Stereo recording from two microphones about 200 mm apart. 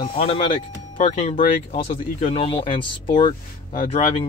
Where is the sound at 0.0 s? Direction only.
30° left (ahead or behind).